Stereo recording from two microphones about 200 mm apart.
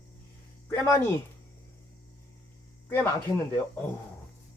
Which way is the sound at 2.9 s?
10° left (ahead or behind).